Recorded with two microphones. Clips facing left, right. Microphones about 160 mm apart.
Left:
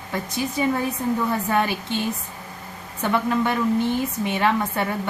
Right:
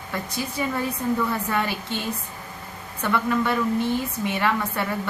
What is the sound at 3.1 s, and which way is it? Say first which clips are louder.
A woman's voice: left 1 dB; 20° left (ahead or behind).